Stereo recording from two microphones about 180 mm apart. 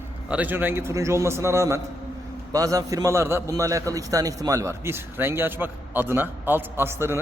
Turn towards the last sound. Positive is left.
turn(degrees=-15)  # may be behind; listen again after turning